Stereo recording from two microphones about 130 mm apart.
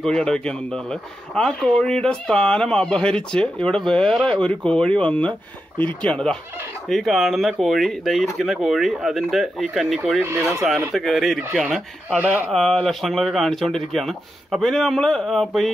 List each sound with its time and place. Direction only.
0.0 s speech: 5° left (ahead or behind)
10.2 s speech: 20° right (ahead or behind)
10.9 s speech: centre (ahead or behind)
12.4 s speech: 5° left (ahead or behind)